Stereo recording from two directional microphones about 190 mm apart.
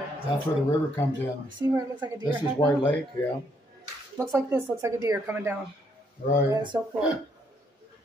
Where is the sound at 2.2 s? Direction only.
25° left (ahead or behind).